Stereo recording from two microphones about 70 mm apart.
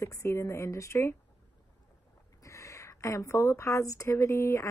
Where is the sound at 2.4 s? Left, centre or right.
Left.